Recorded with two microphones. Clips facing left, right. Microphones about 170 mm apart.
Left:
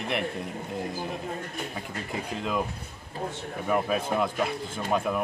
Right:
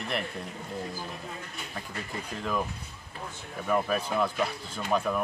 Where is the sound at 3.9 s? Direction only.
20° left (ahead or behind).